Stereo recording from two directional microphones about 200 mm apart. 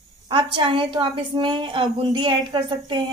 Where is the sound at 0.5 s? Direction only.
25° right (ahead or behind).